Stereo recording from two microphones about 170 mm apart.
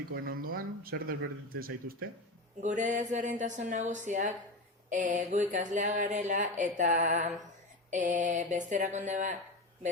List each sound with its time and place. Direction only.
0.1 s speech: 60° right (ahead or behind)
2.6 s speech: 45° right (ahead or behind)